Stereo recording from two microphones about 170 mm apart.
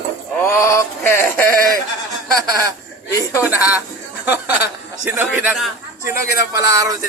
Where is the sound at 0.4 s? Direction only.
15° left (ahead or behind).